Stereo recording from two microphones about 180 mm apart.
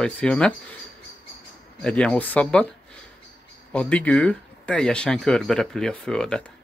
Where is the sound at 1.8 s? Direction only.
5° left (ahead or behind).